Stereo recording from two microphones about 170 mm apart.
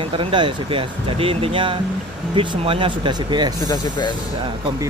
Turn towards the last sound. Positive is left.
turn(degrees=25)  # may be behind; listen again after turning